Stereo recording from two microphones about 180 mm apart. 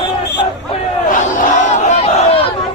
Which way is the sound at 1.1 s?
45° left (ahead or behind).